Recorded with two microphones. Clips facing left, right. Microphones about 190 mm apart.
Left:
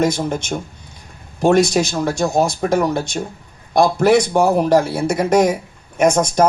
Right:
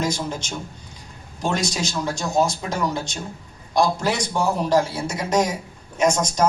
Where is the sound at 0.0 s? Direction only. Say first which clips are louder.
Left 7 dB; 55° left (ahead or behind).